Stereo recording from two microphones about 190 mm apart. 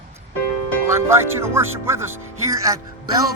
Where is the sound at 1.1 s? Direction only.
15° right (ahead or behind).